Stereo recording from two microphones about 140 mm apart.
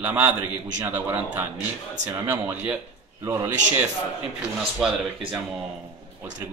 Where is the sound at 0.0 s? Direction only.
10° right (ahead or behind).